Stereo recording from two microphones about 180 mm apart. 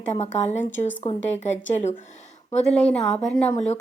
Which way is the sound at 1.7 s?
40° left (ahead or behind).